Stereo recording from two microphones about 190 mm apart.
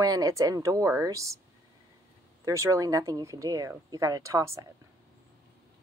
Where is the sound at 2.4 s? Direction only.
15° right (ahead or behind).